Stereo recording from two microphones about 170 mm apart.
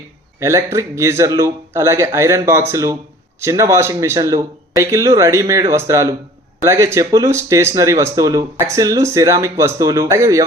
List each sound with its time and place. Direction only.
0.3 s speech: 15° right (ahead or behind)